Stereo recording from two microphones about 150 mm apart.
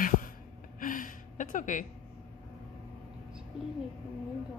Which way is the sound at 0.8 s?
60° left (ahead or behind).